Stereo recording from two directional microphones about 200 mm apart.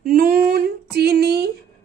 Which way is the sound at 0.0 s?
45° right (ahead or behind).